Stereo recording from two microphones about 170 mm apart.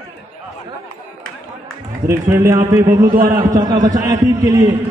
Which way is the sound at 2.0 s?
15° right (ahead or behind).